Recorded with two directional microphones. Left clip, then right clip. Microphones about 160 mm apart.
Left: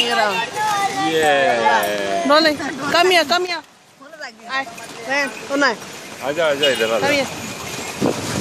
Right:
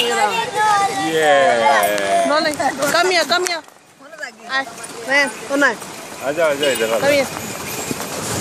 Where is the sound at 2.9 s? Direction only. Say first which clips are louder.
Left 3 dB; 40° left (ahead or behind).